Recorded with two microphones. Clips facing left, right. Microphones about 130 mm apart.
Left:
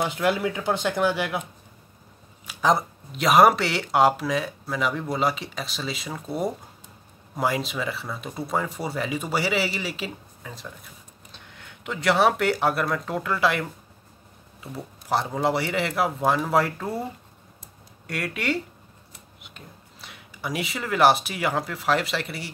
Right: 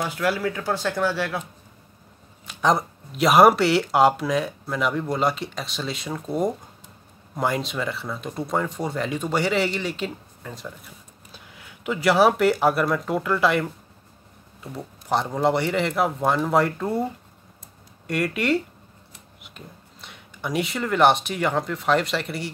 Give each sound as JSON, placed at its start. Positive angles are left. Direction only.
{"t": 0.0, "sound": "speech", "side_deg": 20}
{"t": 2.4, "sound": "speech", "side_deg": 5}
{"t": 18.0, "sound": "speech", "side_deg": 0}